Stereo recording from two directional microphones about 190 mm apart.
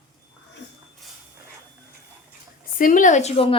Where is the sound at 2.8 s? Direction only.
45° left (ahead or behind).